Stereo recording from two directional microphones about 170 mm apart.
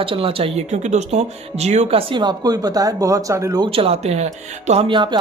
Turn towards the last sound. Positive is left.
turn(degrees=-35)  # may be behind; listen again after turning